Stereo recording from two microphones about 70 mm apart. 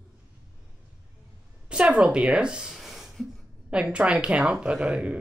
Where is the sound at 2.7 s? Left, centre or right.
Centre.